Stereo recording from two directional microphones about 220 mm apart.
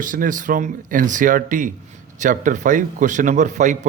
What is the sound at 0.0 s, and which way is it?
Speech, 35° right (ahead or behind).